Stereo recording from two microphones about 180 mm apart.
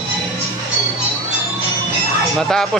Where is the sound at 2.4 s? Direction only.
Centre (ahead or behind).